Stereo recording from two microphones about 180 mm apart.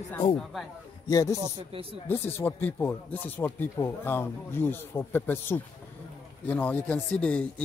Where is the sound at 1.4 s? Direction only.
30° right (ahead or behind).